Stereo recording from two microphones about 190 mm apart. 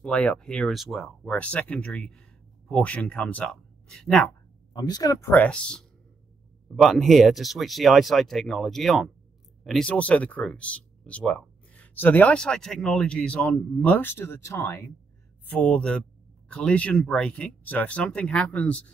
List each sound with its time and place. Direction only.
0.0 s speech: 5° left (ahead or behind)
4.7 s speech: 20° left (ahead or behind)